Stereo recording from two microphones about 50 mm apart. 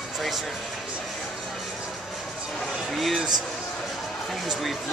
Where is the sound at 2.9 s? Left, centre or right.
Centre.